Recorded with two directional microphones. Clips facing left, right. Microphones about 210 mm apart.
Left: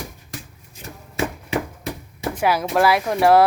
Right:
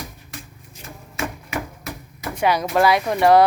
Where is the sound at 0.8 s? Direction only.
30° left (ahead or behind).